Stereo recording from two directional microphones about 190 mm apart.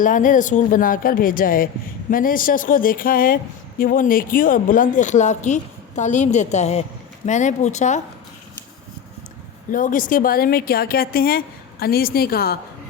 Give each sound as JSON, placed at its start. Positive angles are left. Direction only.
{"t": 0.0, "sound": "a woman's voice", "side_deg": 45}
{"t": 9.7, "sound": "speech", "side_deg": 45}